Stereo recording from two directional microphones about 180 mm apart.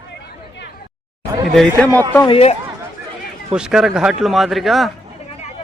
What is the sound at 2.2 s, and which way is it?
Speech, 35° left (ahead or behind).